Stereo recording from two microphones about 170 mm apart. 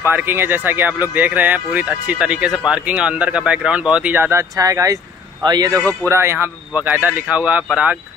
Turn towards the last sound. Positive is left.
turn(degrees=-10)  # may be behind; listen again after turning